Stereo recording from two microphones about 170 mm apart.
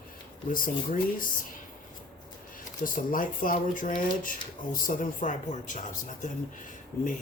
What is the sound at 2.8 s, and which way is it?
Speech, 55° left (ahead or behind).